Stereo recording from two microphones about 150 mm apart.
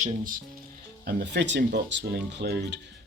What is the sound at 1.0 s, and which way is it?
Speech, 90° right.